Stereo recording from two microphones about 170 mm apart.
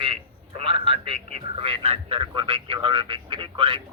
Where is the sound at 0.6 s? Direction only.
35° right (ahead or behind).